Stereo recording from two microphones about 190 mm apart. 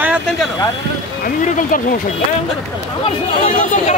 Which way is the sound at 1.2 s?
45° left (ahead or behind).